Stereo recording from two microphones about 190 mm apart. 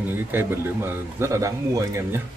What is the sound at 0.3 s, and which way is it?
Speech, 10° right (ahead or behind).